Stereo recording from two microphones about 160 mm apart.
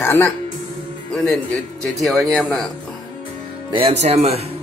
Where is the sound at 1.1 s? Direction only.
5° left (ahead or behind).